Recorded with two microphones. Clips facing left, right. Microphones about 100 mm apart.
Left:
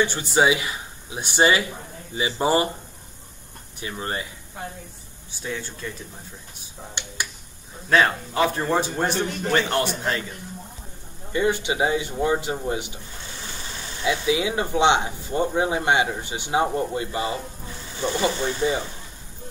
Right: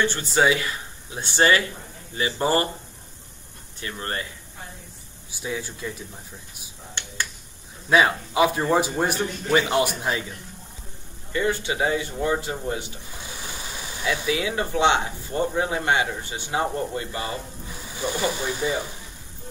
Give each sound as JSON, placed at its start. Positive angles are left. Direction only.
{"t": 0.0, "sound": "a man's voice", "side_deg": 15}
{"t": 3.8, "sound": "a man's voice", "side_deg": 15}
{"t": 5.4, "sound": "speech", "side_deg": -10}
{"t": 7.0, "sound": "a man's voice", "side_deg": 15}
{"t": 7.9, "sound": "speech", "side_deg": -10}
{"t": 11.3, "sound": "a man's voice", "side_deg": 20}
{"t": 13.2, "sound": "vehicle", "side_deg": -10}
{"t": 14.0, "sound": "speech", "side_deg": 20}
{"t": 17.6, "sound": "speech", "side_deg": -10}